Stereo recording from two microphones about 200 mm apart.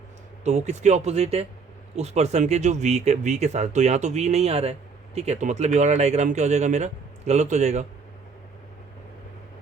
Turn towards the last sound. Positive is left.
turn(degrees=-35)  # may be behind; listen again after turning